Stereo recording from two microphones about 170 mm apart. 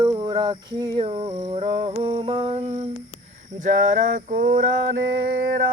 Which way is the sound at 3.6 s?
50° right (ahead or behind).